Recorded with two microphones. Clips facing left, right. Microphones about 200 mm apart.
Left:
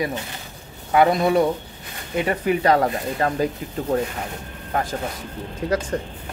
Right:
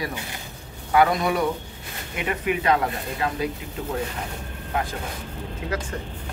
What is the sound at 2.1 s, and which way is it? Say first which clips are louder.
Speech: left 5 dB; 35° left (ahead or behind).